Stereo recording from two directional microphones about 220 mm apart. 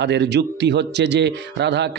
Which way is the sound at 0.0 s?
50° right (ahead or behind).